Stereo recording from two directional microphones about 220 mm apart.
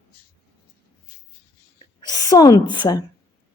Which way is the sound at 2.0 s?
20° left (ahead or behind).